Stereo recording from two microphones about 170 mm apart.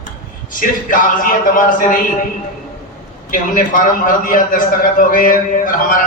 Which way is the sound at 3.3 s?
55° left (ahead or behind).